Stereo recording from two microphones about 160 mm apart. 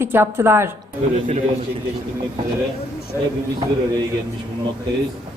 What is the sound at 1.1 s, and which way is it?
Speech, 55° right (ahead or behind).